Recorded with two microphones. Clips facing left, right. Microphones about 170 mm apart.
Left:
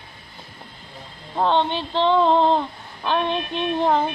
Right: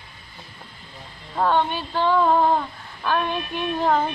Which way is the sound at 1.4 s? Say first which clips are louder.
Left 1 dB; 20° left (ahead or behind).